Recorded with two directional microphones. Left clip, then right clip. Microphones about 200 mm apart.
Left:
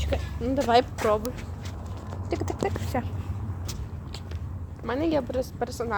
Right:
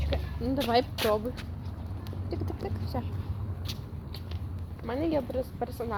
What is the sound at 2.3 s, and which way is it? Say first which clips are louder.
Speech: left 8 dB; 25° left (ahead or behind).